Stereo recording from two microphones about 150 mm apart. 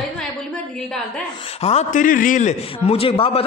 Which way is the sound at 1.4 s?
45° left (ahead or behind).